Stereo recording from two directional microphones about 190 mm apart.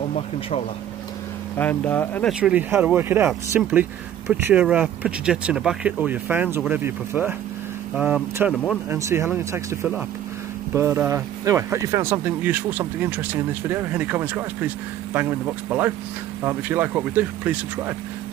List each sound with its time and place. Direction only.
1.6 s speech: 10° left (ahead or behind)
2.4 s speech: 10° right (ahead or behind)
8.9 s speech: 15° right (ahead or behind)